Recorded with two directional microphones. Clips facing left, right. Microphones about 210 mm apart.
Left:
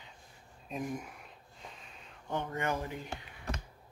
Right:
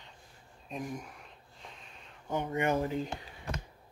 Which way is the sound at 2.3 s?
15° right (ahead or behind).